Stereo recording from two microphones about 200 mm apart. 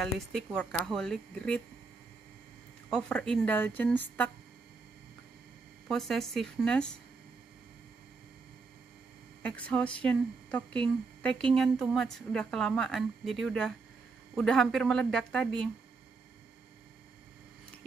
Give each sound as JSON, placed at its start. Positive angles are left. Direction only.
{"t": 0.6, "sound": "a woman's voice", "side_deg": 5}
{"t": 2.9, "sound": "a woman's voice", "side_deg": 5}
{"t": 5.9, "sound": "a woman's voice", "side_deg": 0}
{"t": 9.4, "sound": "a woman's voice", "side_deg": 5}